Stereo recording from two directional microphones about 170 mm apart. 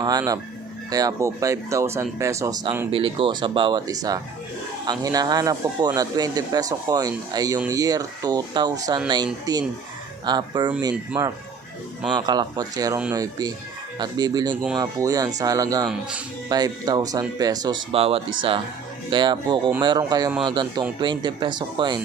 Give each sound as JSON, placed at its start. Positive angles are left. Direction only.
{"t": 0.0, "sound": "speech", "side_deg": -25}
{"t": 2.9, "sound": "speech", "side_deg": -30}
{"t": 12.1, "sound": "speech", "side_deg": -25}
{"t": 15.9, "sound": "speech", "side_deg": -5}
{"t": 16.5, "sound": "speech", "side_deg": -25}